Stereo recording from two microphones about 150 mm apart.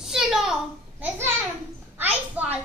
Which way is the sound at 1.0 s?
15° right (ahead or behind).